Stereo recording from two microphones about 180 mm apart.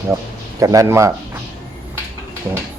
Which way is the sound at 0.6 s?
20° right (ahead or behind).